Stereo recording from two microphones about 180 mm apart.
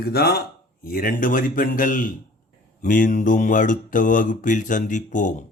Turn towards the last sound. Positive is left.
turn(degrees=45)  # may be behind; listen again after turning